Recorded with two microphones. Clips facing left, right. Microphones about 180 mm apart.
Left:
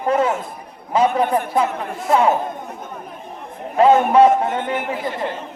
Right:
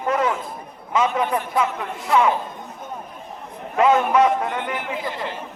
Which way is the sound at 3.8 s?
30° left (ahead or behind).